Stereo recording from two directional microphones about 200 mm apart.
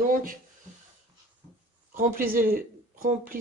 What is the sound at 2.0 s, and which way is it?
A woman's voice, 45° right (ahead or behind).